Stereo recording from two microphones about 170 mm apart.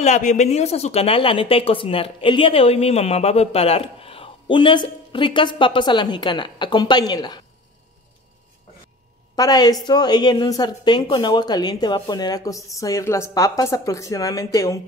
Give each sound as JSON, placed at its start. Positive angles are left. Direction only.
{"t": 0.0, "sound": "a woman's voice", "side_deg": 45}
{"t": 9.3, "sound": "a woman's voice", "side_deg": 20}